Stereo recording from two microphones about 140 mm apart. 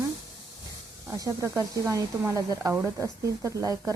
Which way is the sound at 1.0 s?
20° right (ahead or behind).